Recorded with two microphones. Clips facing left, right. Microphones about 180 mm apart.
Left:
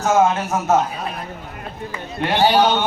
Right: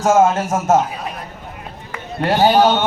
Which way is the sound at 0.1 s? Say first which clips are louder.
Right 3 dB; 45° right (ahead or behind).